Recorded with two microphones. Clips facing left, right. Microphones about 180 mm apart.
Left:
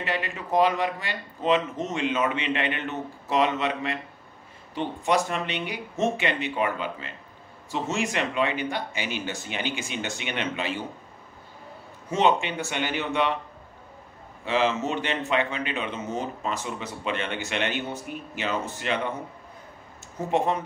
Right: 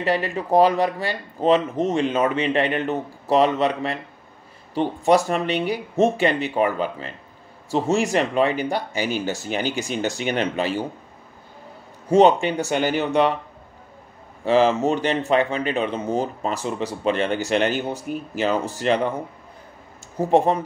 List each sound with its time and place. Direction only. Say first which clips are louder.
0.0 s speech: right 8 dB; 35° right (ahead or behind)
12.1 s speech: right 8 dB; 40° right (ahead or behind)
14.4 s speech: right 7 dB; 40° right (ahead or behind)
20.2 s speech: right 7 dB; 35° right (ahead or behind)